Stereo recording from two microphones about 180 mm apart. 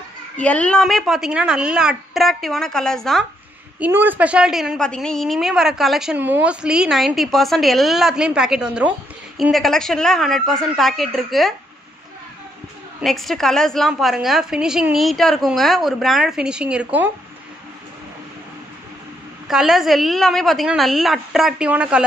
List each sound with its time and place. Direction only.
0.4 s a woman's voice: 5° left (ahead or behind)
3.8 s a woman's voice: 10° right (ahead or behind)
13.0 s a woman's voice: centre (ahead or behind)
19.4 s a woman's voice: centre (ahead or behind)